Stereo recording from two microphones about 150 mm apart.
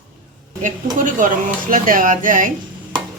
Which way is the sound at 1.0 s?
60° right (ahead or behind).